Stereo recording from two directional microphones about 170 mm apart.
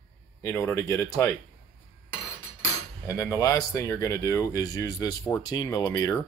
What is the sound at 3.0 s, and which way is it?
Speech, 20° left (ahead or behind).